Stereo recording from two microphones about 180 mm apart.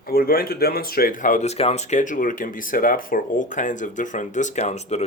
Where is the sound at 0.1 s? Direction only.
55° left (ahead or behind).